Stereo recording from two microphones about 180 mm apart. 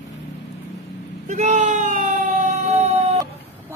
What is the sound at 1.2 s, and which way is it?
Emergency vehicle, 40° right (ahead or behind).